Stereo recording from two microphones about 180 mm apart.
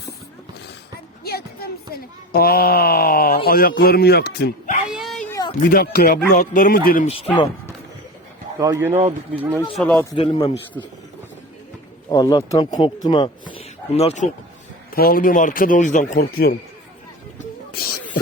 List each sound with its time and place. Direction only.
1.2 s a sound: 60° left (ahead or behind)
2.3 s speech: 55° left (ahead or behind)
4.9 s dog: centre (ahead or behind)
5.7 s a man's voice: 55° left (ahead or behind)
7.1 s speech: 30° left (ahead or behind)
8.5 s speech: 20° right (ahead or behind)
8.9 s speech: 35° right (ahead or behind)
9.3 s speech: 10° right (ahead or behind)
9.6 s speech: 5° left (ahead or behind)
10.2 s a man's voice: 30° left (ahead or behind)
12.0 s a man's voice: 20° left (ahead or behind); by 14.3 s 35° left (ahead or behind)
14.9 s a man's voice: 55° left (ahead or behind)
17.7 s music: 60° left (ahead or behind)